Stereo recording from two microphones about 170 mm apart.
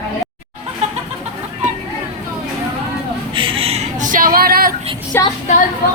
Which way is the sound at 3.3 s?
30° right (ahead or behind).